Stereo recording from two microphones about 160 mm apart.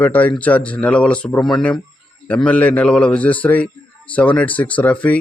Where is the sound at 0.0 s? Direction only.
10° left (ahead or behind).